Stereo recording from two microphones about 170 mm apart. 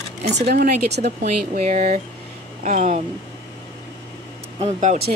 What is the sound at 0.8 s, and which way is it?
Speech, 80° right.